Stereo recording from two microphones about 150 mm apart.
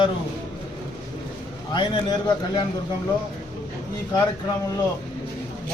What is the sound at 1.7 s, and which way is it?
Speech, 30° left (ahead or behind).